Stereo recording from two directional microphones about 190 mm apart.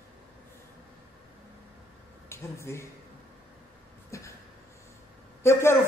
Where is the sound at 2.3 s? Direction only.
15° left (ahead or behind).